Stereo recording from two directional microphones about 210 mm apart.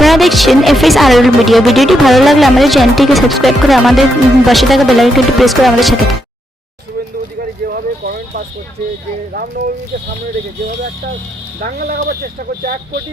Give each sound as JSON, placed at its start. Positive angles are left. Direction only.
{"t": 0.0, "sound": "speech", "side_deg": 0}
{"t": 7.6, "sound": "horse", "side_deg": -45}
{"t": 11.6, "sound": "speech", "side_deg": -40}